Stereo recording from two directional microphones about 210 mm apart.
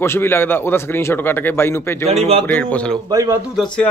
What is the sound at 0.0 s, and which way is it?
A man's voice, 10° left (ahead or behind).